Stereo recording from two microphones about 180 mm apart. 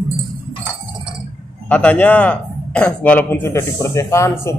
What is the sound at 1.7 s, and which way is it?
A man's voice, 10° left (ahead or behind).